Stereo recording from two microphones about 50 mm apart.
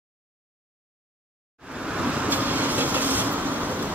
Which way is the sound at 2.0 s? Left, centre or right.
Right.